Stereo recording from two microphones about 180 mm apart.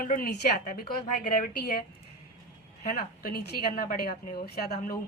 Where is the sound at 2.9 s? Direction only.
55° left (ahead or behind).